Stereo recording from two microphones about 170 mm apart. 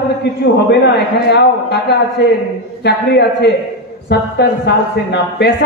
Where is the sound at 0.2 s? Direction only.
80° left.